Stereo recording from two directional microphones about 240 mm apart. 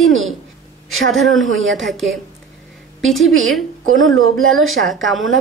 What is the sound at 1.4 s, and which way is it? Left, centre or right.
Speech, right.